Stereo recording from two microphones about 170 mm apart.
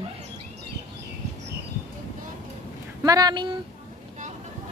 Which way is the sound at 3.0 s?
20° right (ahead or behind).